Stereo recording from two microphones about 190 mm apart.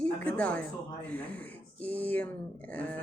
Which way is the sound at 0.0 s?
5° left (ahead or behind).